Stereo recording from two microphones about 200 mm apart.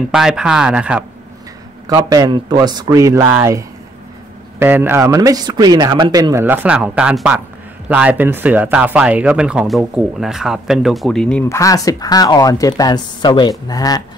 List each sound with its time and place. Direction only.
0.1 s speech: 5° right (ahead or behind)
1.9 s speech: 20° right (ahead or behind); by 14.0 s 20° left (ahead or behind)